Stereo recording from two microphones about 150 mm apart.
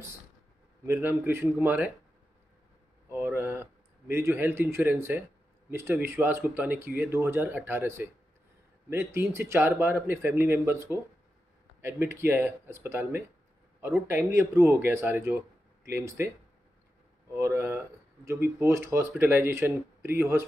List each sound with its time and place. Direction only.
0.8 s speech: 15° right (ahead or behind)
3.1 s speech: 15° right (ahead or behind)
17.3 s speech: 20° right (ahead or behind)